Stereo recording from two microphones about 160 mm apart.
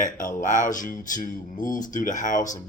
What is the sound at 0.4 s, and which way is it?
Speech, 55° left (ahead or behind).